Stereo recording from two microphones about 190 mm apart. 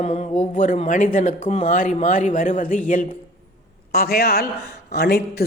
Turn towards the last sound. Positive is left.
turn(degrees=55)  # may be behind; listen again after turning